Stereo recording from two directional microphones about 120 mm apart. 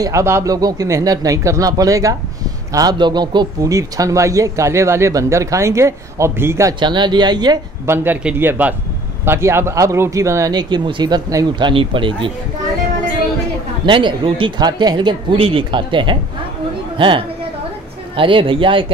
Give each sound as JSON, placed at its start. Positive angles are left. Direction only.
{"t": 0.0, "sound": "speech", "side_deg": -25}
{"t": 6.8, "sound": "speech", "side_deg": -40}
{"t": 7.8, "sound": "a man's voice", "side_deg": -20}
{"t": 11.7, "sound": "speech", "side_deg": -45}
{"t": 13.8, "sound": "speech", "side_deg": -45}